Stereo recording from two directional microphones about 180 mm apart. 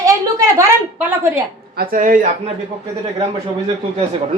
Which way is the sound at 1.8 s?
50° right (ahead or behind).